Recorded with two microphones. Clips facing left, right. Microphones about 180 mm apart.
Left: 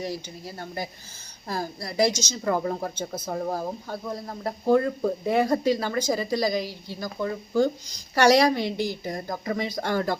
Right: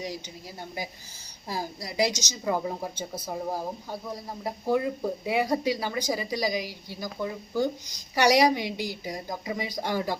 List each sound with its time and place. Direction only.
0.0 s speech: 15° right (ahead or behind)